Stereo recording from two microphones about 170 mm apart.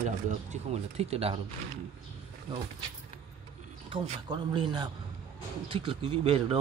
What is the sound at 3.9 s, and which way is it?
Speech, 40° right (ahead or behind).